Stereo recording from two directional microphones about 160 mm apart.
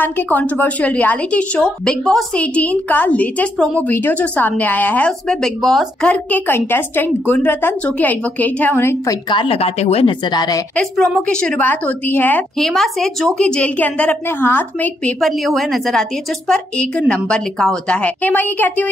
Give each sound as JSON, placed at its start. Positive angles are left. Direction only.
{"t": 0.0, "sound": "a woman's voice", "side_deg": 10}
{"t": 9.3, "sound": "a woman's voice", "side_deg": 35}
{"t": 10.8, "sound": "a woman's voice", "side_deg": 5}
{"t": 12.5, "sound": "a woman's voice", "side_deg": 0}